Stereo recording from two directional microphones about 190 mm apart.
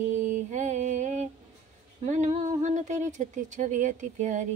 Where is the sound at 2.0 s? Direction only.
35° right (ahead or behind).